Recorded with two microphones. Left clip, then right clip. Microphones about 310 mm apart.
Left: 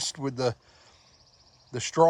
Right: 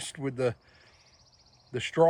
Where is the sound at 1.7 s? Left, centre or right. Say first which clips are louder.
Even; centre.